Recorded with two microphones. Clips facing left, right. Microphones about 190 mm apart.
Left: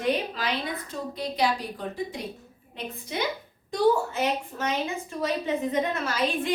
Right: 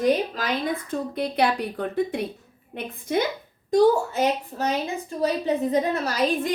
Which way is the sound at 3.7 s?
40° right (ahead or behind).